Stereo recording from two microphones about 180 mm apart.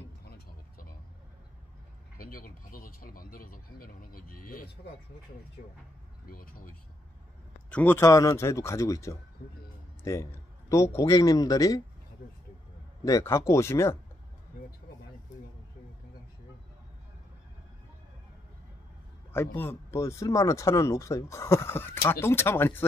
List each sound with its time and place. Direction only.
0.2 s vehicle: 55° left (ahead or behind)
2.1 s speech: 50° left (ahead or behind)
6.2 s speech: 50° left (ahead or behind)
7.7 s a man's voice: 10° left (ahead or behind)
13.0 s speech: 15° left (ahead or behind)
19.3 s speech: 10° left (ahead or behind)